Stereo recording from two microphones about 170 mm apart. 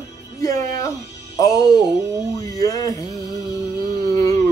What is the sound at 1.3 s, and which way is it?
Speech, 20° left (ahead or behind).